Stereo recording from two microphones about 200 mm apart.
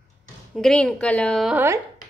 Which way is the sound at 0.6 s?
Centre (ahead or behind).